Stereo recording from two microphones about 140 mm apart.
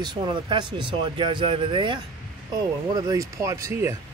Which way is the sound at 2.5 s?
25° right (ahead or behind).